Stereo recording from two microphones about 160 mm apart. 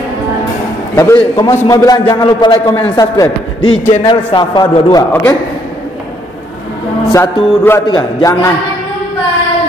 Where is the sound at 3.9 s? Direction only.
30° left (ahead or behind).